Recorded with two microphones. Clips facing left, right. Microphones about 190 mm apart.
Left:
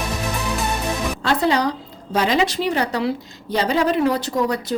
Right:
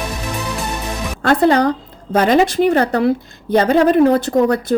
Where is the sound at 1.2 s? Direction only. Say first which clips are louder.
Right 7 dB; 55° right (ahead or behind).